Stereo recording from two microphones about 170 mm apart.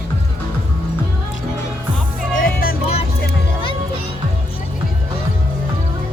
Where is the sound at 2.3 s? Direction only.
60° left (ahead or behind).